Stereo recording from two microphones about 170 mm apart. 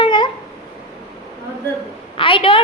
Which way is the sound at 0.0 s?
30° left (ahead or behind).